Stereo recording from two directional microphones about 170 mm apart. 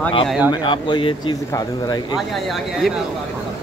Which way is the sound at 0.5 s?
25° left (ahead or behind).